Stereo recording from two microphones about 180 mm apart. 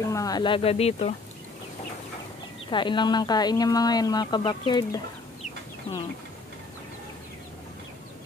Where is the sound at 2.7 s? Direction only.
25° left (ahead or behind).